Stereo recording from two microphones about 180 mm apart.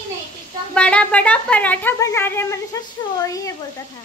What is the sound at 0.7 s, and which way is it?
A woman's voice, 5° left (ahead or behind).